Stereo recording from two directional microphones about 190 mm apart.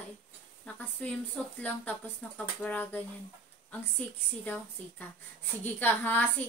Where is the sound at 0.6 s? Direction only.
5° left (ahead or behind).